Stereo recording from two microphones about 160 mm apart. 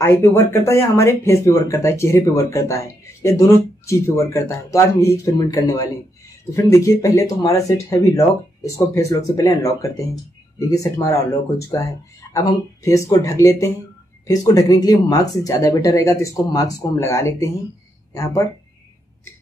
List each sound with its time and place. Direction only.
0.0 s speech: 15° left (ahead or behind)
12.3 s speech: 20° left (ahead or behind)